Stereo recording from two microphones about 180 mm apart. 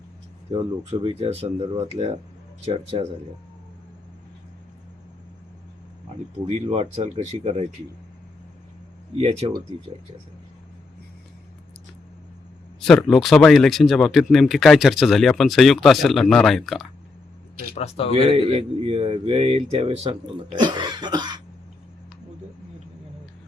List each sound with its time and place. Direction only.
0.5 s a man's voice: 30° right (ahead or behind)
6.5 s a man's voice: 35° right (ahead or behind)
9.1 s a man's voice: 35° right (ahead or behind)
12.8 s speech: 5° left (ahead or behind)
17.7 s speech: 35° left (ahead or behind)
18.1 s a man's voice: 30° right (ahead or behind)
20.6 s cough: 25° right (ahead or behind)